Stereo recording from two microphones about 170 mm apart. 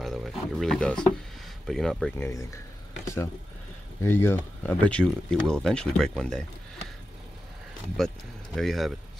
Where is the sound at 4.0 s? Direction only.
15° left (ahead or behind).